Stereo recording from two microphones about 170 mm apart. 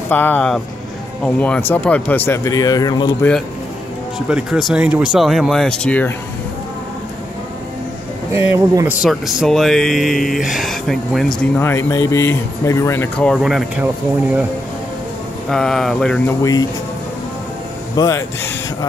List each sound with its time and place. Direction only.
0.1 s speech: 10° left (ahead or behind)
3.2 s speech: 5° left (ahead or behind)
4.3 s speech: 5° right (ahead or behind)
8.3 s speech: 15° right (ahead or behind)
9.0 s speech: centre (ahead or behind)
11.6 s speech: 15° left (ahead or behind); by 13.8 s centre (ahead or behind)
15.5 s speech: 5° left (ahead or behind)
17.9 s speech: 15° left (ahead or behind)